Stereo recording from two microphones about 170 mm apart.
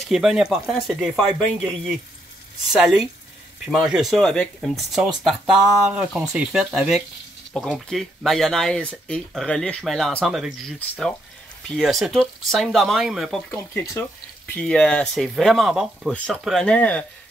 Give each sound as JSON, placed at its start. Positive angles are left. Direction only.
{"t": 0.1, "sound": "speech", "side_deg": -5}
{"t": 2.7, "sound": "speech", "side_deg": 0}
{"t": 11.7, "sound": "speech", "side_deg": 0}
{"t": 13.5, "sound": "speech", "side_deg": 10}